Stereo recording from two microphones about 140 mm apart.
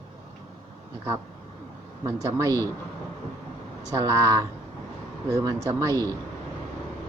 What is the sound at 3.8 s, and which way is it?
Speech, 25° right (ahead or behind).